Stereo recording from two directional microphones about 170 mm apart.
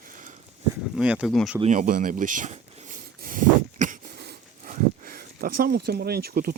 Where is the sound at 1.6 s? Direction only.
50° right (ahead or behind).